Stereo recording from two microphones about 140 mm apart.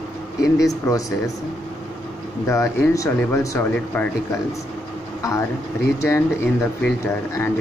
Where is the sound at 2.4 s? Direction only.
20° left (ahead or behind).